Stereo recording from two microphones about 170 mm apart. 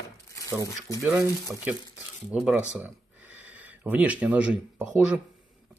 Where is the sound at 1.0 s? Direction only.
15° right (ahead or behind).